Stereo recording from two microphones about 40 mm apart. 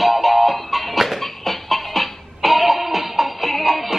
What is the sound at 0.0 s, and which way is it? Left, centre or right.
Music, centre.